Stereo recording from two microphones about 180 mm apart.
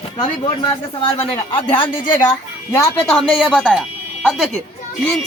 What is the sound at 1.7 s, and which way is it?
Speech, 25° left (ahead or behind).